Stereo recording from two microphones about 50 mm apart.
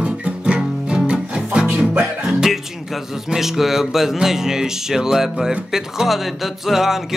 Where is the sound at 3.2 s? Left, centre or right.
Centre.